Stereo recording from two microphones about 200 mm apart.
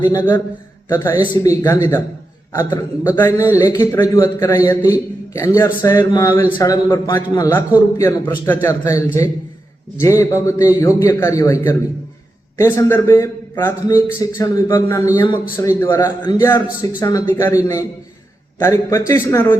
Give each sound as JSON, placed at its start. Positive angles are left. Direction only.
{"t": 0.0, "sound": "a man's voice", "side_deg": 10}